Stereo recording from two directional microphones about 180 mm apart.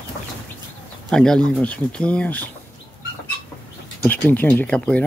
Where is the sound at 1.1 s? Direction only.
5° left (ahead or behind).